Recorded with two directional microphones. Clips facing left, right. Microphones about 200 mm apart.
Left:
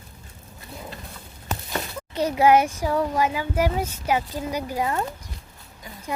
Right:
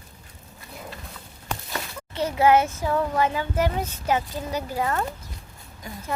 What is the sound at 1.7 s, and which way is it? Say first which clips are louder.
A child's voice: left 3 dB; 15° left (ahead or behind).